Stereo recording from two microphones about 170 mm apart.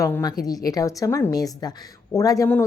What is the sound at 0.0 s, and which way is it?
A woman's voice, 20° left (ahead or behind).